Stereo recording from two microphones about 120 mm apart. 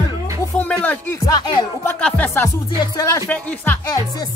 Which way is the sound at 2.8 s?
30° left (ahead or behind).